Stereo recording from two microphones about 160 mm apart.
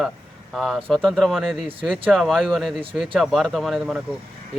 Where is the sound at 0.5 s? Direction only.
Centre (ahead or behind).